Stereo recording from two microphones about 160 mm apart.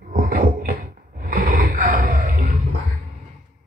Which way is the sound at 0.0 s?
60° right (ahead or behind).